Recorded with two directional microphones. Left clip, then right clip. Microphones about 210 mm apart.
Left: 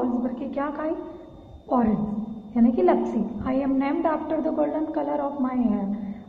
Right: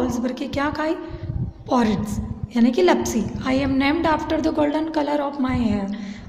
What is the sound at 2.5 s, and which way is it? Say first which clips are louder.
A woman's voice: right 3 dB; 55° right (ahead or behind).